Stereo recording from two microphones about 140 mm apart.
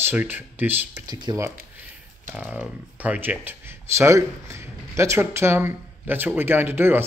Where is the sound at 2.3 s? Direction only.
10° right (ahead or behind).